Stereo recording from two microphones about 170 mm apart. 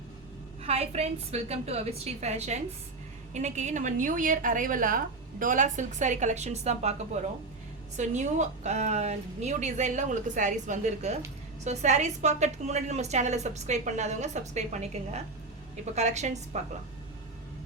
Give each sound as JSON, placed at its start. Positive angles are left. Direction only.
{"t": 0.6, "sound": "a woman's voice", "side_deg": -40}